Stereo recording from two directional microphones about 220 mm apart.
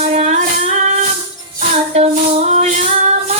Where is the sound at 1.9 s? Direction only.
30° right (ahead or behind).